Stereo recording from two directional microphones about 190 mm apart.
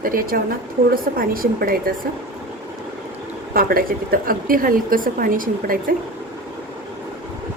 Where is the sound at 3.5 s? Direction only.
50° right (ahead or behind).